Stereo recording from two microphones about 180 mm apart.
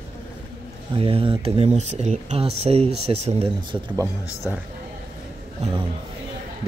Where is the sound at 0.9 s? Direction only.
30° right (ahead or behind).